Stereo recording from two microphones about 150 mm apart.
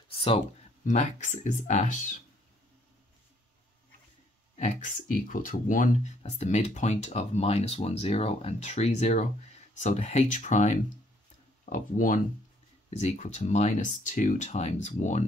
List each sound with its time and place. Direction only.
0.1 s a sound: 35° left (ahead or behind)
0.8 s speech: 55° left (ahead or behind)
4.6 s speech: 55° left (ahead or behind)
12.9 s speech: 50° left (ahead or behind)